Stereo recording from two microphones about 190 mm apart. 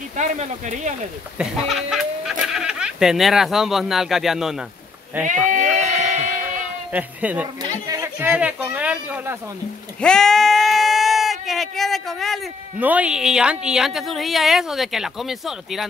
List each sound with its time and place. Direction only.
0.2 s speech: 40° right (ahead or behind)
1.4 s fowl: centre (ahead or behind)
2.4 s speech: 5° right (ahead or behind)
5.2 s bleat: 40° right (ahead or behind)
6.9 s a woman's voice: 10° right (ahead or behind)
10.0 s bleat: 5° left (ahead or behind)
12.7 s a woman's voice: 10° right (ahead or behind)